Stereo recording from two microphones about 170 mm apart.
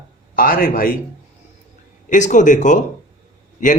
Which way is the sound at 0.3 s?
55° left (ahead or behind).